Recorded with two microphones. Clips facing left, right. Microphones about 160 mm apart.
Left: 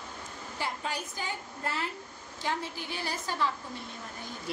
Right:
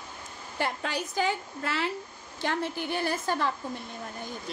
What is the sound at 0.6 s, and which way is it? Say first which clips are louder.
A woman's voice: right 4 dB; 70° right (ahead or behind).